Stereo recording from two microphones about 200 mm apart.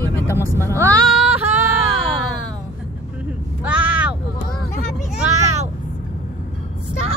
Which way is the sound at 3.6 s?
5° right (ahead or behind).